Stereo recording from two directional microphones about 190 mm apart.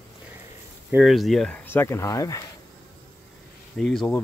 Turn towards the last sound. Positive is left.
turn(degrees=0)  # may be behind; listen again after turning